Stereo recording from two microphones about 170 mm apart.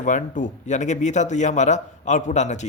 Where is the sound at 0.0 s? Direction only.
45° left (ahead or behind).